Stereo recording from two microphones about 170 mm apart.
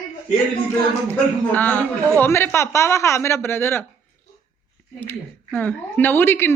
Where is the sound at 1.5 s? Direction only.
10° left (ahead or behind).